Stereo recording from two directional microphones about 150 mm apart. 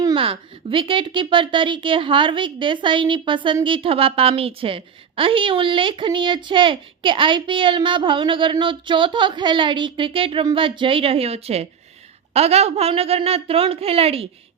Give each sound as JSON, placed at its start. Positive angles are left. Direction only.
{"t": 0.0, "sound": "speech", "side_deg": -35}